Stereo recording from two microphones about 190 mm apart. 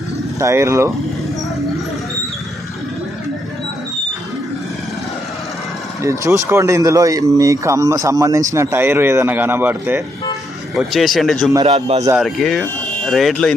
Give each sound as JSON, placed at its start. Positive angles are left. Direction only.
{"t": 0.4, "sound": "a man's voice", "side_deg": -15}
{"t": 6.0, "sound": "a man's voice", "side_deg": -15}
{"t": 11.6, "sound": "a man's voice", "side_deg": -30}
{"t": 12.2, "sound": "speech", "side_deg": 0}